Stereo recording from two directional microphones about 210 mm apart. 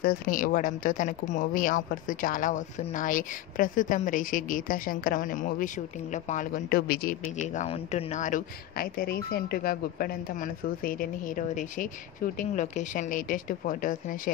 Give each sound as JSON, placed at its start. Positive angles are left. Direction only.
{"t": 0.0, "sound": "speech", "side_deg": 40}